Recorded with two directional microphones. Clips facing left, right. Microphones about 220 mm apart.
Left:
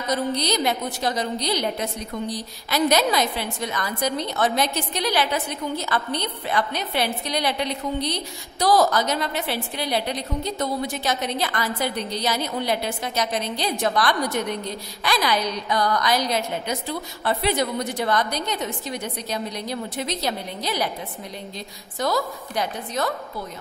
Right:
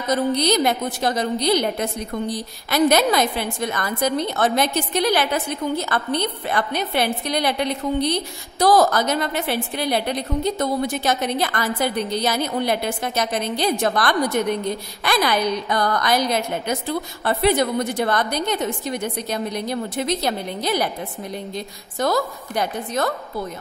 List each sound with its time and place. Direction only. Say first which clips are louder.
0.1 s a woman's voice: right 5 dB; 50° right (ahead or behind)